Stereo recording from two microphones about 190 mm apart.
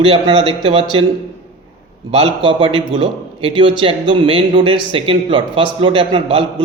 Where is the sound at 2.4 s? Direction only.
30° right (ahead or behind).